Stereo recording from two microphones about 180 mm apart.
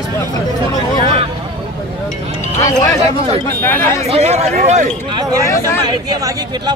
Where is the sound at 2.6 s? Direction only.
15° left (ahead or behind).